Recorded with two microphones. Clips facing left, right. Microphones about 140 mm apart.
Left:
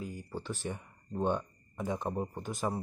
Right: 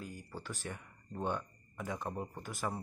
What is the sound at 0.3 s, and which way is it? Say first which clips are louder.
Speech: left 6 dB; 20° left (ahead or behind).